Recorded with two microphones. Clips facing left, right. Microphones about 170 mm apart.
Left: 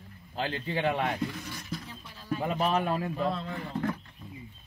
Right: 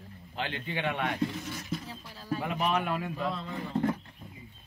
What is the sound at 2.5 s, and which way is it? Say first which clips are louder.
Speech: left 2 dB; 35° left (ahead or behind).